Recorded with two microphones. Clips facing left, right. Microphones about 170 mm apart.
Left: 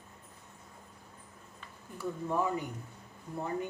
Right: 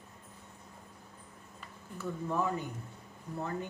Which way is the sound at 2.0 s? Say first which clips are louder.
Left 1 dB; 10° left (ahead or behind).